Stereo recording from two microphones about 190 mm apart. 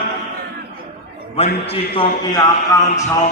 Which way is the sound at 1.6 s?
30° left (ahead or behind).